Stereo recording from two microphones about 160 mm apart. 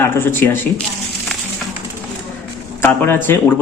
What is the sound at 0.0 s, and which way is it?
Speech, 15° left (ahead or behind).